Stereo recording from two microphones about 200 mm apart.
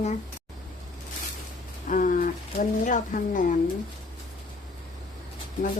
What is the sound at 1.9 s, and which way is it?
Speech, 40° left (ahead or behind).